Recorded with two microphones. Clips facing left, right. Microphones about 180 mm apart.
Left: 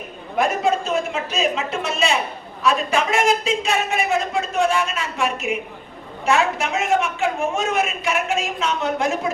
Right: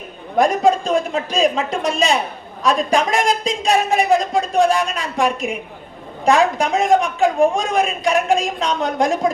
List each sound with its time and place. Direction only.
0.3 s a woman's voice: 35° right (ahead or behind)